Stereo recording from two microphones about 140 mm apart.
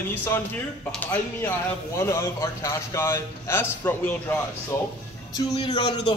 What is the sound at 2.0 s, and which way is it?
A man's voice, 20° left (ahead or behind).